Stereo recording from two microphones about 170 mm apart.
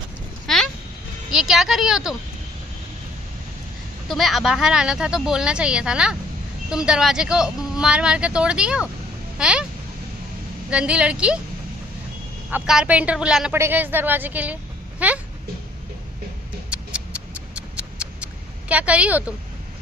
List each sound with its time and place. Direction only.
0.5 s a sound: 5° left (ahead or behind)
1.3 s speech: centre (ahead or behind)
4.1 s a woman's voice: centre (ahead or behind)
10.7 s a woman's voice: 5° right (ahead or behind)
12.4 s a woman's voice: 5° right (ahead or behind)
16.7 s a sound: 5° right (ahead or behind)